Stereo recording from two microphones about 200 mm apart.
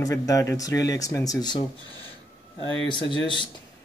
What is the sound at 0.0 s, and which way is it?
Speech, 15° left (ahead or behind).